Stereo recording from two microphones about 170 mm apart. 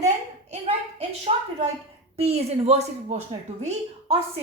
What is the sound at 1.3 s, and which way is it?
A woman's voice, 40° right (ahead or behind).